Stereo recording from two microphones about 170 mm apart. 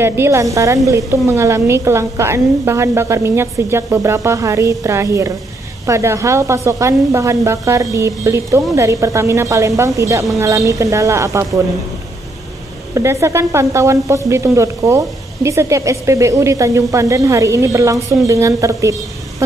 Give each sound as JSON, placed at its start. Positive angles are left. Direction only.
{"t": 0.0, "sound": "a woman's voice", "side_deg": -15}
{"t": 12.9, "sound": "a woman's voice", "side_deg": -15}